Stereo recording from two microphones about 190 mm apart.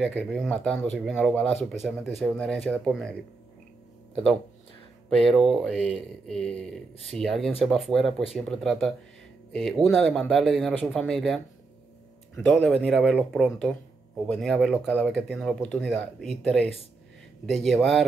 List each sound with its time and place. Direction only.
0.0 s speech: 5° left (ahead or behind)
5.1 s speech: centre (ahead or behind)
5.8 s speech: 30° right (ahead or behind)
6.2 s speech: 5° left (ahead or behind)